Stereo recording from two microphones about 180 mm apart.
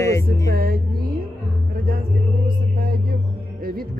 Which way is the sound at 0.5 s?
55° right (ahead or behind).